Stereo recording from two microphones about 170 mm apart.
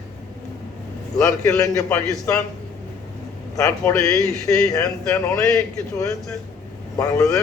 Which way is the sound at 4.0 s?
5° left (ahead or behind).